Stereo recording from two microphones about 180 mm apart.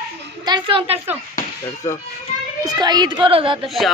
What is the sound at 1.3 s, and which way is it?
Speech, 15° left (ahead or behind).